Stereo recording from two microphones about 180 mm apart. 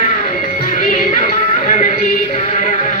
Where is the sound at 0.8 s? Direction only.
45° left (ahead or behind).